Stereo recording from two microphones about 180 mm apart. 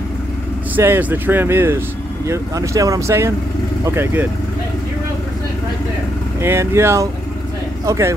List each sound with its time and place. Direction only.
0.7 s speech: 10° right (ahead or behind)
6.4 s speech: 15° right (ahead or behind)